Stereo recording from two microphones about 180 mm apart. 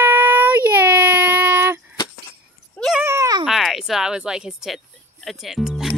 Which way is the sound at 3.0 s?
15° right (ahead or behind).